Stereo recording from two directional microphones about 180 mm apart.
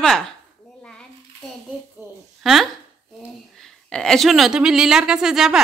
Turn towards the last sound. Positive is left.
turn(degrees=-5)  # may be behind; listen again after turning